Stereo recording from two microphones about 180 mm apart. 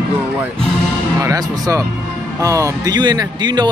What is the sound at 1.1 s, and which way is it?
A man's voice, 20° right (ahead or behind).